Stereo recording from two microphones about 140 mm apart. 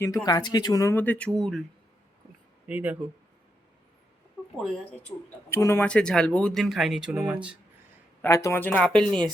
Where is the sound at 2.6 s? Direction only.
10° right (ahead or behind).